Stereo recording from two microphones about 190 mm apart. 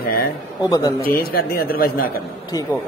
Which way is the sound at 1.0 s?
50° left (ahead or behind).